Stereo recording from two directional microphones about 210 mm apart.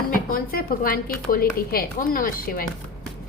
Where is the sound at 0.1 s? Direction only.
45° left (ahead or behind).